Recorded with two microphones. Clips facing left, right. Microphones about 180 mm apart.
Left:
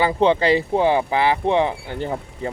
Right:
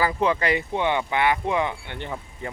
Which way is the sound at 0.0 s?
30° left (ahead or behind).